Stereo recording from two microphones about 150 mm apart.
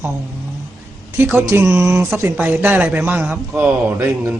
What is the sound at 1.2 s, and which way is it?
A man's voice, 15° right (ahead or behind).